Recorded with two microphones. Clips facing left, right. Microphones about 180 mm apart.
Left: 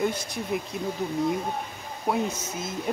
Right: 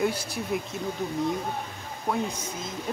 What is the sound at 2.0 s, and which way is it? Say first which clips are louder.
Speech: left 2 dB; 10° left (ahead or behind).